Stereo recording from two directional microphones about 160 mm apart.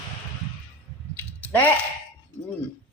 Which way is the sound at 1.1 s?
10° left (ahead or behind).